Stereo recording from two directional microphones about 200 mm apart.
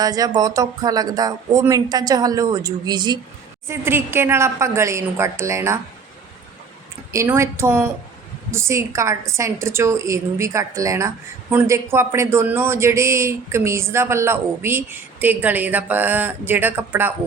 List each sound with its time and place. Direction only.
0.0 s speech: 20° right (ahead or behind)
7.1 s speech: 15° right (ahead or behind)